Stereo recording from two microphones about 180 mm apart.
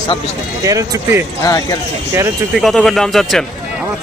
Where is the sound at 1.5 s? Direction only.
20° left (ahead or behind).